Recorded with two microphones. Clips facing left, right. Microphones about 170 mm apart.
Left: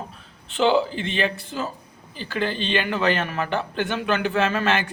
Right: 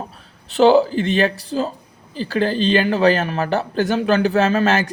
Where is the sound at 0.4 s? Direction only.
40° right (ahead or behind).